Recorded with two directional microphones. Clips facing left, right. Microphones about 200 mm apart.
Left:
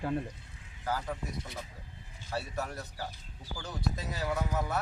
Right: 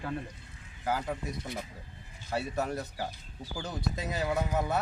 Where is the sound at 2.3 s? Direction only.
20° right (ahead or behind).